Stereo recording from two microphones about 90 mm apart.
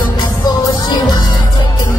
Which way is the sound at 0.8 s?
55° left (ahead or behind).